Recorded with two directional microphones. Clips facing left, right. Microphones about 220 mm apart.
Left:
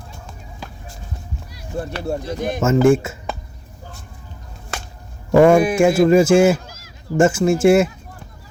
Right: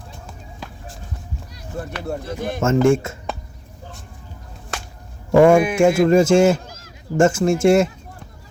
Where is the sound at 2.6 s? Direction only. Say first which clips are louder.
Left 2 dB; 5° left (ahead or behind).